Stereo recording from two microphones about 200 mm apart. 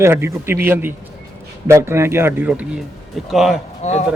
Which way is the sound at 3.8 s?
35° left (ahead or behind).